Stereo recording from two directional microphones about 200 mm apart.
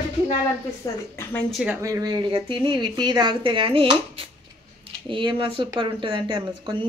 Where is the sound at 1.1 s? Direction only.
10° left (ahead or behind).